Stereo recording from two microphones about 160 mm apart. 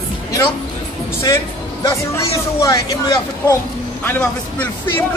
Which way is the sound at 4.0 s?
10° left (ahead or behind).